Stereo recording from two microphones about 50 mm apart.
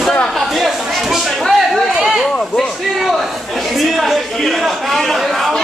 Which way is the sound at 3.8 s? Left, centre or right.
Centre.